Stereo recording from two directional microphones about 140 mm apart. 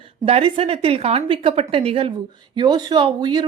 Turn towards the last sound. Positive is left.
turn(degrees=-30)  # may be behind; listen again after turning